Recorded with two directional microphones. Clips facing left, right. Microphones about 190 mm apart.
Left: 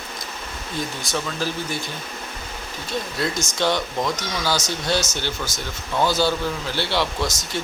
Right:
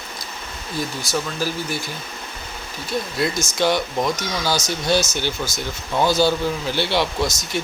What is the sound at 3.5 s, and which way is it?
Speech, 10° right (ahead or behind).